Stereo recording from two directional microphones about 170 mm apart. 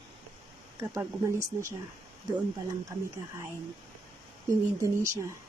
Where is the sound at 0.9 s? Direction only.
15° right (ahead or behind).